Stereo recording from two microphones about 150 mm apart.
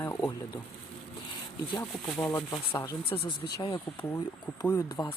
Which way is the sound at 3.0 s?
40° left (ahead or behind).